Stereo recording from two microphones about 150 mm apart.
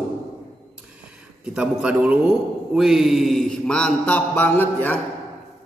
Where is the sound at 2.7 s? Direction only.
5° right (ahead or behind).